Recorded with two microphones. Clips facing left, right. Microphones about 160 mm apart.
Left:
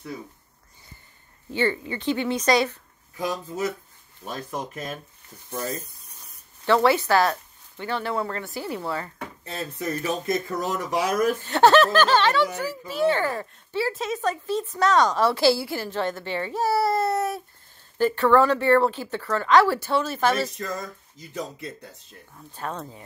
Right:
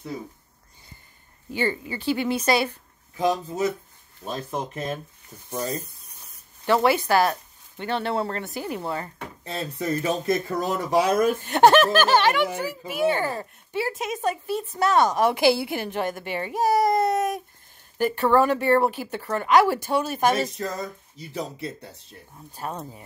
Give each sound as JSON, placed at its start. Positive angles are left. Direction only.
{"t": 2.0, "sound": "speech", "side_deg": -10}
{"t": 3.2, "sound": "speech", "side_deg": -25}
{"t": 11.4, "sound": "speech", "side_deg": -15}
{"t": 21.2, "sound": "speech", "side_deg": -30}
{"t": 22.5, "sound": "speech", "side_deg": -10}